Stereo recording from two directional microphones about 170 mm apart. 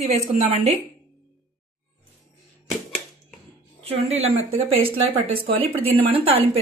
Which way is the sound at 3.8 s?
35° right (ahead or behind).